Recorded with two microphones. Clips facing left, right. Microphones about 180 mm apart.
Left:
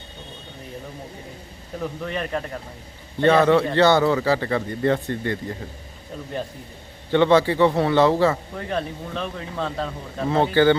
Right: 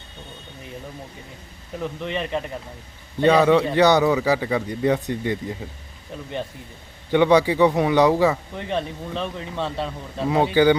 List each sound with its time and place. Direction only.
1.8 s speech: centre (ahead or behind)
3.2 s a man's voice: 15° right (ahead or behind)
7.1 s a man's voice: 15° right (ahead or behind)
8.3 s speech: centre (ahead or behind)